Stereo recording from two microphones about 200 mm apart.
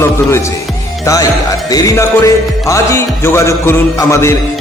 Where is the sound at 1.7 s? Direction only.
15° left (ahead or behind).